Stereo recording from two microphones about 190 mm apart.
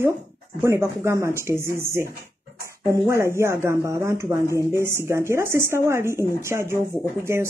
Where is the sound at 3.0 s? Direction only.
15° right (ahead or behind).